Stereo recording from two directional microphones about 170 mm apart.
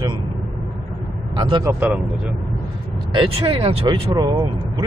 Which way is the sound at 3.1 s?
30° right (ahead or behind).